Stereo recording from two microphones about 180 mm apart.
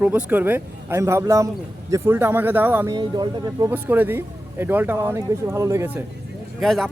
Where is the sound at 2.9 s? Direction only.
25° right (ahead or behind).